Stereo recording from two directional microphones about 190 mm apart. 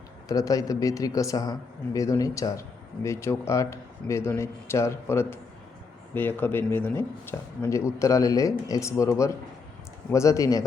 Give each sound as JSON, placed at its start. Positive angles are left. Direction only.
{"t": 0.3, "sound": "a man's voice", "side_deg": 20}